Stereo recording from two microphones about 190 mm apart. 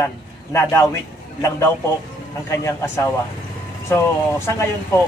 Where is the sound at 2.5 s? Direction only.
15° left (ahead or behind).